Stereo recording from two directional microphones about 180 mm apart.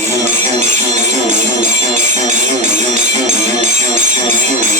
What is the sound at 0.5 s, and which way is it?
Music, 40° right (ahead or behind).